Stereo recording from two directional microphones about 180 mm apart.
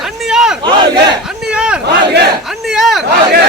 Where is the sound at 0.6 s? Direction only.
25° right (ahead or behind).